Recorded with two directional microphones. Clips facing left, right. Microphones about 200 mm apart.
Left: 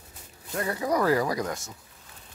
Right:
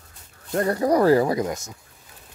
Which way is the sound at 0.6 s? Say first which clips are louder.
Right 7 dB; 45° right (ahead or behind).